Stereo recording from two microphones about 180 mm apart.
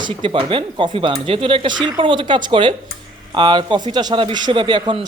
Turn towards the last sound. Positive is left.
turn(degrees=-25)  # may be behind; listen again after turning